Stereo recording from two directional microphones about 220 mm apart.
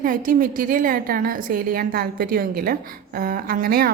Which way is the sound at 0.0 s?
40° right (ahead or behind).